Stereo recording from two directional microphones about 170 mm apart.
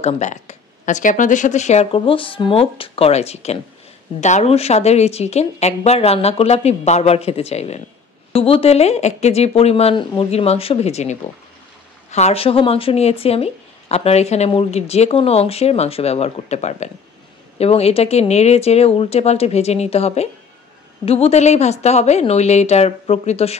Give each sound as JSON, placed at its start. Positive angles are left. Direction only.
{"t": 0.0, "sound": "speech", "side_deg": 45}